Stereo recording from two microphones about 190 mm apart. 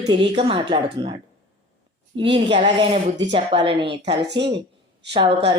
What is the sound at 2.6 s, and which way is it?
Speech, 35° right (ahead or behind).